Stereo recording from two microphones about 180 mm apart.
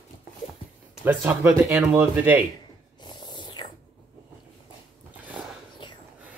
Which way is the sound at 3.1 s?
25° left (ahead or behind).